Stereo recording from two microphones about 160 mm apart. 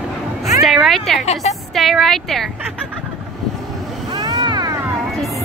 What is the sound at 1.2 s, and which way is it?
Speech, 45° left (ahead or behind).